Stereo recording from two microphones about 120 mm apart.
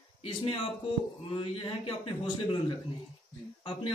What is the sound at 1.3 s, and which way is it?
Speech, 45° left (ahead or behind).